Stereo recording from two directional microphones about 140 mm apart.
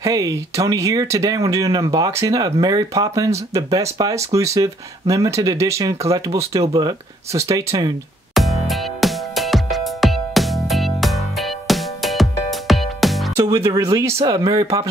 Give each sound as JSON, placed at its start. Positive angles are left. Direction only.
{"t": 0.0, "sound": "speech", "side_deg": -25}
{"t": 8.4, "sound": "music", "side_deg": 0}
{"t": 13.4, "sound": "speech", "side_deg": -20}